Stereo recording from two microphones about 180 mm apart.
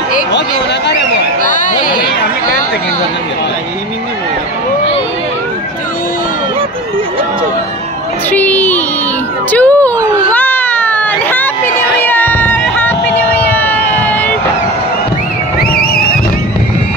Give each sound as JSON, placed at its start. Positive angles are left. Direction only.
{"t": 1.4, "sound": "speech", "side_deg": 45}
{"t": 8.3, "sound": "a sound", "side_deg": 10}
{"t": 10.3, "sound": "baby cry", "side_deg": 10}